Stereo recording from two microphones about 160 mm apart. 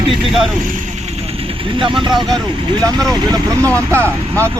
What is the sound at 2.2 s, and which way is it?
Speech, centre (ahead or behind).